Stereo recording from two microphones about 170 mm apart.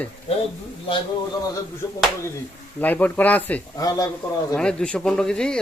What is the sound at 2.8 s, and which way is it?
Speech, 10° left (ahead or behind).